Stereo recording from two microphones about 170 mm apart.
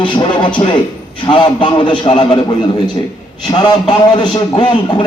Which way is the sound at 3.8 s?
25° left (ahead or behind).